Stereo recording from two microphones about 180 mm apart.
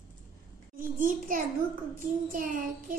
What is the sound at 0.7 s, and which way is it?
A child's voice, 50° right (ahead or behind).